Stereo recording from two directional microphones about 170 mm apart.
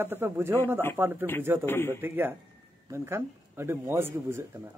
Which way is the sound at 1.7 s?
15° left (ahead or behind).